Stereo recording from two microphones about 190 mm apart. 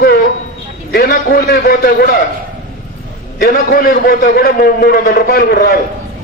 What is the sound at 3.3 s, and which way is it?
A man's voice, 55° left (ahead or behind).